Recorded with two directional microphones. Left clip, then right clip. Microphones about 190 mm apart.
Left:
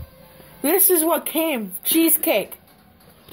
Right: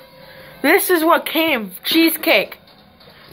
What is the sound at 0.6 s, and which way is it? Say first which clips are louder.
A woman's voice: right 6 dB; 10° left (ahead or behind).